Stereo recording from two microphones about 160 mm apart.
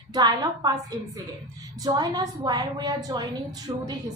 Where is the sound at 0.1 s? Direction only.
25° right (ahead or behind).